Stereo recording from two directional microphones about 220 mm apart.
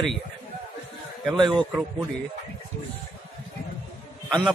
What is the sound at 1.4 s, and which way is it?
Speech, 20° right (ahead or behind).